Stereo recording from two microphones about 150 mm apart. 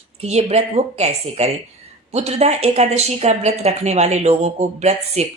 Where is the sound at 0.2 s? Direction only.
45° right (ahead or behind).